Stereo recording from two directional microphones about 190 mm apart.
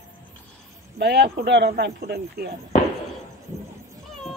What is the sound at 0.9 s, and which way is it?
Speech, 60° right (ahead or behind).